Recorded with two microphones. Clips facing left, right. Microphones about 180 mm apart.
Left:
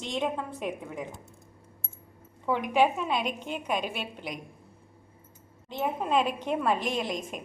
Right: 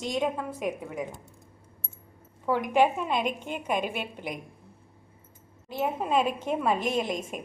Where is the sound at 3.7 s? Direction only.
50° right (ahead or behind).